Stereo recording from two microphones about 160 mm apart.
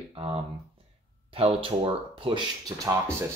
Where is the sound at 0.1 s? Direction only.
35° right (ahead or behind).